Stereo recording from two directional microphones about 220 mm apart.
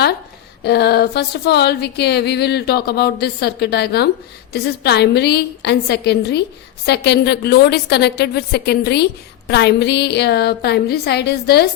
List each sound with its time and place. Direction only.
0.6 s speech: 50° left (ahead or behind)